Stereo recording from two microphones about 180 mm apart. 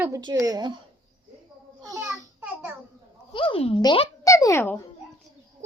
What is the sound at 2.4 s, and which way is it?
Babbling, 5° right (ahead or behind).